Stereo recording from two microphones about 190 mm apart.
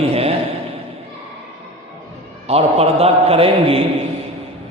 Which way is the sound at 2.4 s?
30° right (ahead or behind).